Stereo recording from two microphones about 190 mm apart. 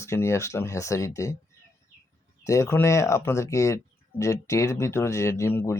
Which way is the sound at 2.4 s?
15° left (ahead or behind).